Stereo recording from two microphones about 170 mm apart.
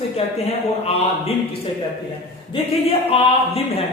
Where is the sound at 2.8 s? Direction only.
35° left (ahead or behind).